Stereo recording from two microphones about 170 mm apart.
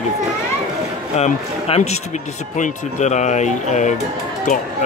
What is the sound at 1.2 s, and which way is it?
Speech, 40° left (ahead or behind).